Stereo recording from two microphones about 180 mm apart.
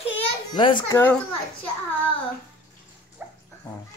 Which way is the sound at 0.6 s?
25° left (ahead or behind).